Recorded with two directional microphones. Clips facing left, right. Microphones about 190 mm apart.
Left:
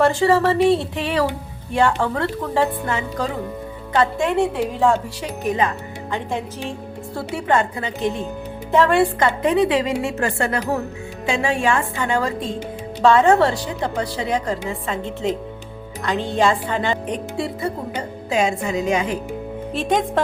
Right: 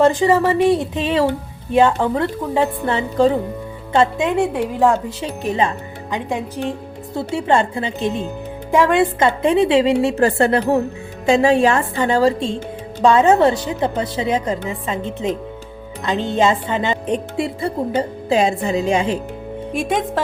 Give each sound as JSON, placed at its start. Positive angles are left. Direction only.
{"t": 0.0, "sound": "a woman's voice", "side_deg": -15}
{"t": 2.8, "sound": "a woman's voice", "side_deg": -30}
{"t": 5.4, "sound": "a woman's voice", "side_deg": -25}
{"t": 6.1, "sound": "a woman's voice", "side_deg": -15}
{"t": 7.2, "sound": "a woman's voice", "side_deg": -25}
{"t": 13.0, "sound": "a woman's voice", "side_deg": -20}
{"t": 19.7, "sound": "speech", "side_deg": -10}